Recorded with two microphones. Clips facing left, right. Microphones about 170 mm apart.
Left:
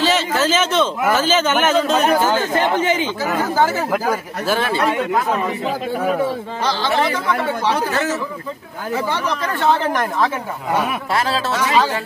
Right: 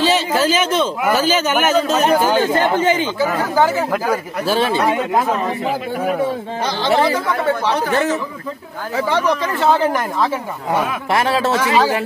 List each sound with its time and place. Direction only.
0.0 s a sound: 15° right (ahead or behind)
2.3 s speech: 30° right (ahead or behind)
4.5 s speech: 20° right (ahead or behind)
6.8 s speech: 20° right (ahead or behind)
11.1 s speech: 25° right (ahead or behind)